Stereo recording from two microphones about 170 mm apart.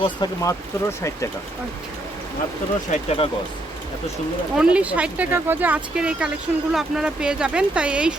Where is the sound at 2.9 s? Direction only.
35° left (ahead or behind).